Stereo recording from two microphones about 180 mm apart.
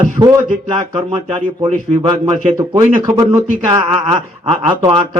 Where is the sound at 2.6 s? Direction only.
25° right (ahead or behind).